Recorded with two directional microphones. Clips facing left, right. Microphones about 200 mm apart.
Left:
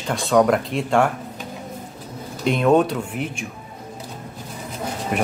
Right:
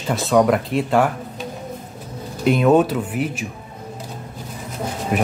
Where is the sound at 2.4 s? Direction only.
5° right (ahead or behind).